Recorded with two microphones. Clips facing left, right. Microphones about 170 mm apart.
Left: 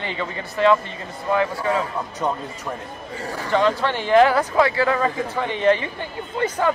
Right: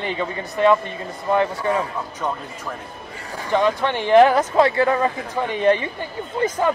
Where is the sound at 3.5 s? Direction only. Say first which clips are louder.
Right 1 dB; 15° right (ahead or behind).